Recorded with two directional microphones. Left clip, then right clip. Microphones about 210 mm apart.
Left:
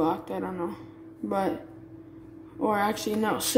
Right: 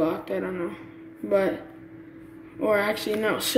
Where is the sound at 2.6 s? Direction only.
20° left (ahead or behind).